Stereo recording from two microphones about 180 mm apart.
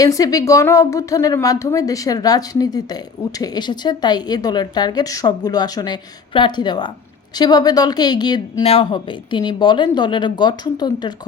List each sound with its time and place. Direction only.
0.0 s speech: 20° left (ahead or behind)